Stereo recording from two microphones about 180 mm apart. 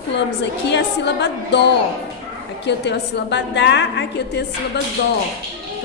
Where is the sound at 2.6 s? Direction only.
70° left (ahead or behind).